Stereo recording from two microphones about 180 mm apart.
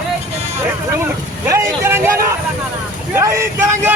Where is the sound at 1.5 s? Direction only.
15° right (ahead or behind).